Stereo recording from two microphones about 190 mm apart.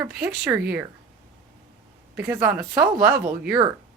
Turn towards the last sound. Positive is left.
turn(degrees=-10)  # may be behind; listen again after turning